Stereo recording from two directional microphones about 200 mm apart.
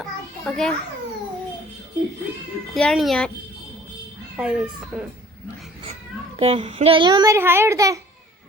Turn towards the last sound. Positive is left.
turn(degrees=-15)  # may be behind; listen again after turning